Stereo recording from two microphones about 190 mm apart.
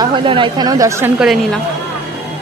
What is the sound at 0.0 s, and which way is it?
Speech, 25° right (ahead or behind).